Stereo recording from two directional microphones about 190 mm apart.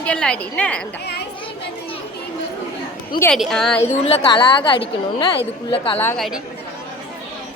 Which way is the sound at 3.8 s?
30° left (ahead or behind).